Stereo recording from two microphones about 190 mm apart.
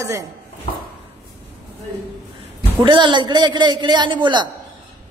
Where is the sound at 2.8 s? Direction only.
25° right (ahead or behind).